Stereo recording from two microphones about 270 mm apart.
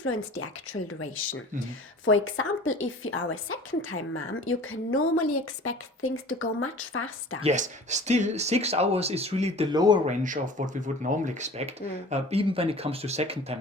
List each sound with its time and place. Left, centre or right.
0.0 s a woman's voice: left
7.4 s speech: right
10.1 s speech: right